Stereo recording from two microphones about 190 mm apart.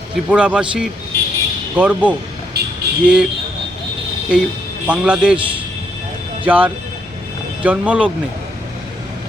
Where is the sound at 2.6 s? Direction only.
55° right (ahead or behind).